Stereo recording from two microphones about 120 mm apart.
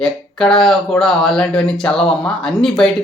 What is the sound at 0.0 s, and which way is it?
Speech, 5° left (ahead or behind).